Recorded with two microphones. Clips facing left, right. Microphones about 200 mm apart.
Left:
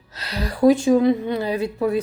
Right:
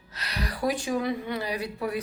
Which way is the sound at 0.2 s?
25° left (ahead or behind).